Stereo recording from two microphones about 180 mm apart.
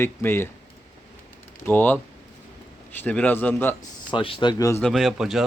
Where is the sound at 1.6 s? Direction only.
10° left (ahead or behind).